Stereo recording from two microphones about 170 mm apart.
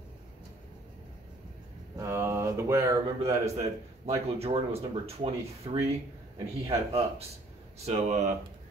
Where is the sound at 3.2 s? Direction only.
40° right (ahead or behind).